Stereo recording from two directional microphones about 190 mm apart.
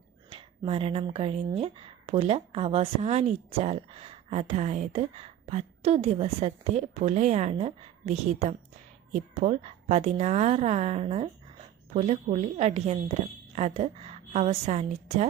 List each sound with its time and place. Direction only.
0.3 s speech: 30° right (ahead or behind)